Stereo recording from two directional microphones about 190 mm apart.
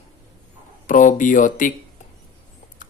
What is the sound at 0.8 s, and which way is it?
Speech, 45° left (ahead or behind).